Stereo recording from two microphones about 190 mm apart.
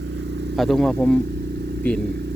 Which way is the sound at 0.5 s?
Centre (ahead or behind).